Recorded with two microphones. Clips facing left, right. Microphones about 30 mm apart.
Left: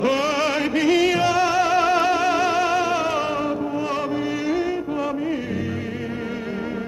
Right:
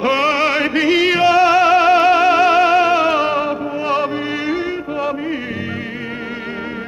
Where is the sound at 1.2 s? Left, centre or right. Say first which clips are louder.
Right 7 dB; right.